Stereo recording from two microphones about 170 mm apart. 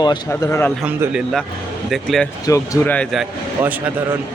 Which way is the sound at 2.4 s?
20° left (ahead or behind).